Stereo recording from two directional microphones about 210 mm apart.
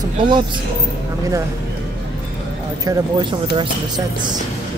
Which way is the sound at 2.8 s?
20° right (ahead or behind).